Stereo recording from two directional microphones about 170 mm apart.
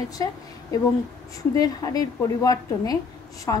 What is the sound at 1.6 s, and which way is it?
A woman's voice, 20° left (ahead or behind).